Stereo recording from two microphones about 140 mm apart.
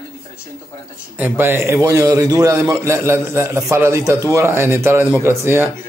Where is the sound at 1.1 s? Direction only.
15° right (ahead or behind).